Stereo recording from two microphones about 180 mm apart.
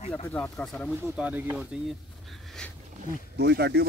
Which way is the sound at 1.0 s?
10° right (ahead or behind).